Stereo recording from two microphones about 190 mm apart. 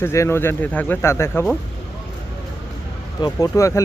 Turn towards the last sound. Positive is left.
turn(degrees=15)  # may be behind; listen again after turning